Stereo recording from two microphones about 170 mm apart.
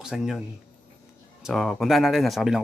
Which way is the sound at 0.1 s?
Centre (ahead or behind).